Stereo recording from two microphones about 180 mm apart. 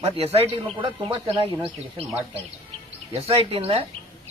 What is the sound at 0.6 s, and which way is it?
Speech, 30° right (ahead or behind).